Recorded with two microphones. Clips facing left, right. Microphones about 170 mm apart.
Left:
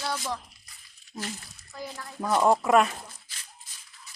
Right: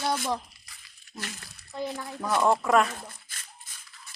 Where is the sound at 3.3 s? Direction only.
50° right (ahead or behind).